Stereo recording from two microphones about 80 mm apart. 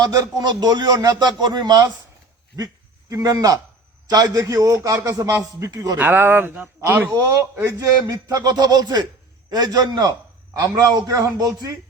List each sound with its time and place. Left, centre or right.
0.0 s a man's voice: right
3.1 s a man's voice: right
6.0 s speech: right
6.5 s speech: centre
6.8 s speech: right
7.6 s a man's voice: right